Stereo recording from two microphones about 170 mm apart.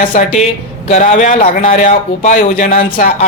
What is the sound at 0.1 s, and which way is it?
A man's voice, 50° left (ahead or behind).